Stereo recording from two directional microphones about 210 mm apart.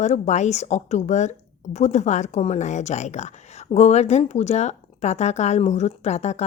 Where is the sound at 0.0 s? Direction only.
35° left (ahead or behind).